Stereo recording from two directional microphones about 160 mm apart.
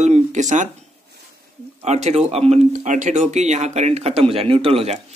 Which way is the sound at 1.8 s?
45° right (ahead or behind).